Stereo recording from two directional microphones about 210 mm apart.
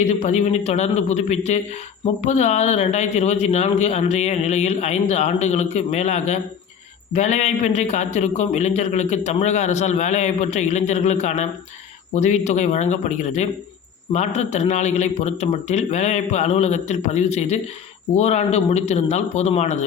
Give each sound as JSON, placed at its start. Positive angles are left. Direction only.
{"t": 0.0, "sound": "a man's voice", "side_deg": 30}